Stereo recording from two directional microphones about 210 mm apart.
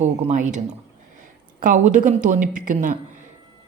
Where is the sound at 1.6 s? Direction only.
40° right (ahead or behind).